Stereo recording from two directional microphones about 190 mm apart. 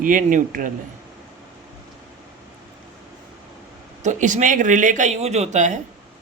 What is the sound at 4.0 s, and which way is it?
Speech, 40° right (ahead or behind).